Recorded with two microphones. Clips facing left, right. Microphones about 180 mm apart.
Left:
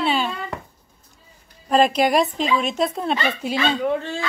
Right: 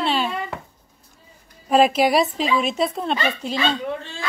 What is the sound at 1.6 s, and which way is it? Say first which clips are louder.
Speech: right 1 dB; 5° right (ahead or behind).